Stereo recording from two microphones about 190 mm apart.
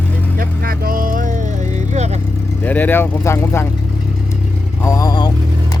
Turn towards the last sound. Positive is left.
turn(degrees=20)  # may be behind; listen again after turning